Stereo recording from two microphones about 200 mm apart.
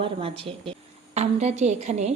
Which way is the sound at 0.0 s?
25° right (ahead or behind).